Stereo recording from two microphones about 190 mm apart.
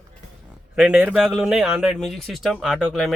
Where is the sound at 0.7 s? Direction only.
5° right (ahead or behind).